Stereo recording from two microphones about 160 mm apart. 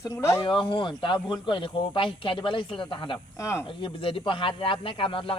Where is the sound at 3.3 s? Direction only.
15° left (ahead or behind).